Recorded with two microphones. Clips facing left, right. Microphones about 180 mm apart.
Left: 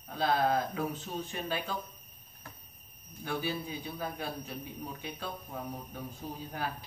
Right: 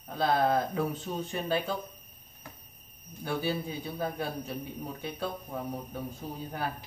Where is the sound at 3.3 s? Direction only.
45° right (ahead or behind).